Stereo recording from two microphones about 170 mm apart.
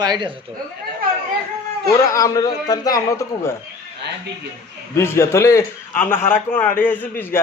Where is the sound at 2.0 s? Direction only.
20° left (ahead or behind).